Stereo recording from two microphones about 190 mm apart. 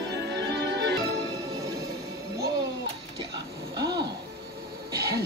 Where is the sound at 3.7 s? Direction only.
20° right (ahead or behind).